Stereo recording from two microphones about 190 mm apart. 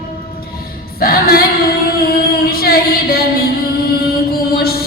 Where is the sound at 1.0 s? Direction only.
50° left (ahead or behind).